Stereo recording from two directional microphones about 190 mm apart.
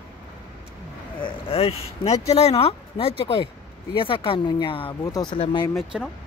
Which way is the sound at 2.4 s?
30° left (ahead or behind).